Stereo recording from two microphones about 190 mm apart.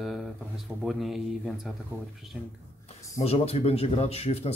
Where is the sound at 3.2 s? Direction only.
35° left (ahead or behind).